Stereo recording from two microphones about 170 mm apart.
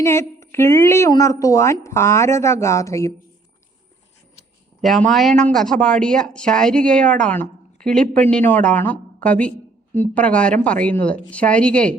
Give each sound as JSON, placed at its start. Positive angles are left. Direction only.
{"t": 0.0, "sound": "a woman's voice", "side_deg": 15}
{"t": 4.8, "sound": "a woman's voice", "side_deg": 0}